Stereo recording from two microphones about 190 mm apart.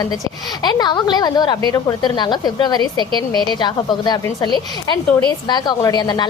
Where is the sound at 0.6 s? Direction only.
20° left (ahead or behind).